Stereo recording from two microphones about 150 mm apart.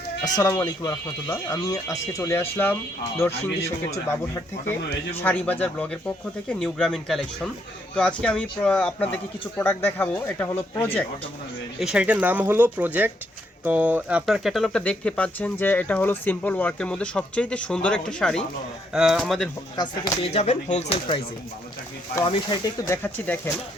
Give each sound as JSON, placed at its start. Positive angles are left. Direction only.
{"t": 0.3, "sound": "speech", "side_deg": 25}
{"t": 4.4, "sound": "speech", "side_deg": 15}
{"t": 11.8, "sound": "speech", "side_deg": -5}
{"t": 19.7, "sound": "speech", "side_deg": 25}
{"t": 20.2, "sound": "speech", "side_deg": 45}
{"t": 22.2, "sound": "speech", "side_deg": 30}
{"t": 23.0, "sound": "speech", "side_deg": 10}